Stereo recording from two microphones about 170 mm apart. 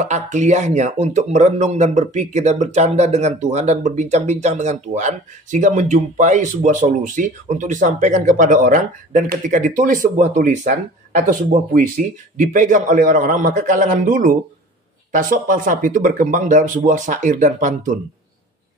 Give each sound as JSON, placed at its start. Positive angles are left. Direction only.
{"t": 0.0, "sound": "speech", "side_deg": -45}